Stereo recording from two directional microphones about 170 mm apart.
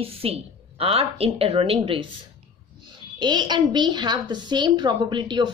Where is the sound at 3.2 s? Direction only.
25° right (ahead or behind).